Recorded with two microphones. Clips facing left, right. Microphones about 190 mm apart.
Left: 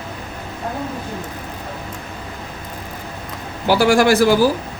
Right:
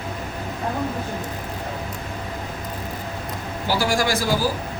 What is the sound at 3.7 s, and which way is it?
Speech, 65° left (ahead or behind).